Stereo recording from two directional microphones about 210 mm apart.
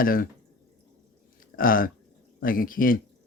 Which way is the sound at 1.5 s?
40° left (ahead or behind).